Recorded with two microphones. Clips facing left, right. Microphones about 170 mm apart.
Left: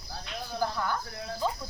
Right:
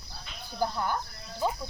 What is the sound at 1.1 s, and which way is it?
Speech, 70° left (ahead or behind).